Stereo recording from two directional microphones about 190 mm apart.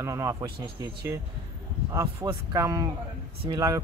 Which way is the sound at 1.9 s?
15° right (ahead or behind).